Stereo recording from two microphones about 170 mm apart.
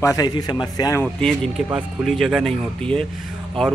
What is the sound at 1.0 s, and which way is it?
Speech, 5° left (ahead or behind).